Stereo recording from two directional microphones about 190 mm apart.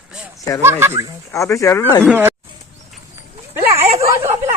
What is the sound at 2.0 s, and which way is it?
Speech, 10° right (ahead or behind).